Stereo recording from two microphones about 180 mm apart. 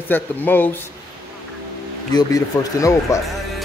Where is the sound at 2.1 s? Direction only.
20° left (ahead or behind).